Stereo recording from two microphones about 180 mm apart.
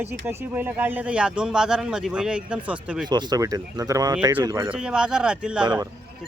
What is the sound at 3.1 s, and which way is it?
Speech, 25° right (ahead or behind).